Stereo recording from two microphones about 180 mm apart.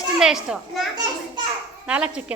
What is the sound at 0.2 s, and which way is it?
Speech, 5° right (ahead or behind).